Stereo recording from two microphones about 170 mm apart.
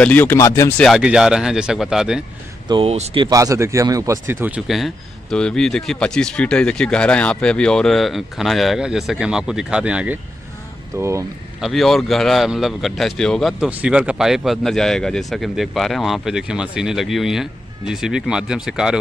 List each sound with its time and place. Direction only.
0.0 s speech: 10° left (ahead or behind)
0.8 s speech: 5° right (ahead or behind)
2.7 s speech: 35° right (ahead or behind)
3.3 s speech: 20° right (ahead or behind)
11.0 s speech: 15° right (ahead or behind)
11.6 s speech: centre (ahead or behind)